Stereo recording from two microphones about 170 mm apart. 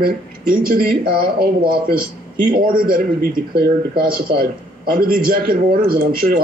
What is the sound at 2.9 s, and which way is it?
Speech, 55° right (ahead or behind).